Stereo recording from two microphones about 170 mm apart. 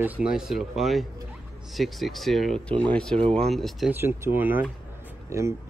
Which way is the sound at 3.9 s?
15° right (ahead or behind).